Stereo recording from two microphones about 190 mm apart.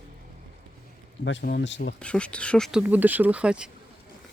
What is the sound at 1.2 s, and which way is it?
Speech, 70° left (ahead or behind).